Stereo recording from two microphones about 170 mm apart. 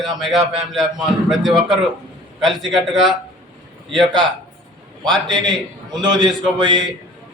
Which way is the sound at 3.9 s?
25° right (ahead or behind).